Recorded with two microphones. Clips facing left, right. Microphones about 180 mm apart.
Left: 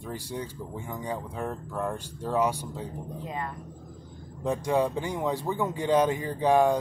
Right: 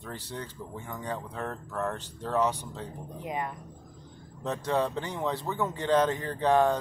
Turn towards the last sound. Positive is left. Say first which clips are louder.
# left 2 dB
turn(degrees=10)  # may be behind; listen again after turning